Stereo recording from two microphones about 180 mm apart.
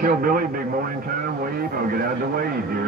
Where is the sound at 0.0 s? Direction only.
50° right (ahead or behind).